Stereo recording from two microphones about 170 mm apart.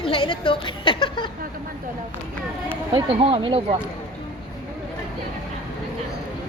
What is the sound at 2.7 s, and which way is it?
Speech, 35° right (ahead or behind).